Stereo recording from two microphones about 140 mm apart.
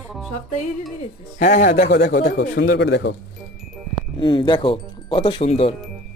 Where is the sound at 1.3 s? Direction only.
70° left (ahead or behind); by 2.8 s 90° left.